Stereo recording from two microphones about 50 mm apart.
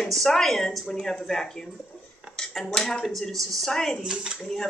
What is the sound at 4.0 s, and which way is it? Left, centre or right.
Speech, centre.